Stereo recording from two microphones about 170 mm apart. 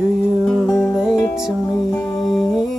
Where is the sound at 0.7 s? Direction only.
15° left (ahead or behind).